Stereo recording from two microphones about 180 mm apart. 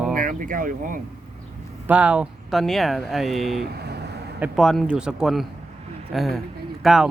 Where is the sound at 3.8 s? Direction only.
65° right (ahead or behind).